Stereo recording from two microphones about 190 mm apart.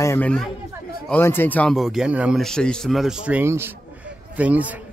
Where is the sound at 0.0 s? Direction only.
10° left (ahead or behind); by 3.7 s 10° right (ahead or behind).